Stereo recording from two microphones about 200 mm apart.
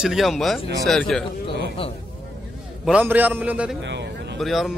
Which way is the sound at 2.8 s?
5° right (ahead or behind).